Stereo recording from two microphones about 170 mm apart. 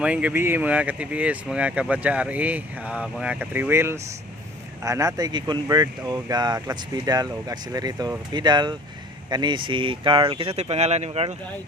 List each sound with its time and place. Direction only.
0.0 s speech: 10° right (ahead or behind); by 11.3 s 40° right (ahead or behind)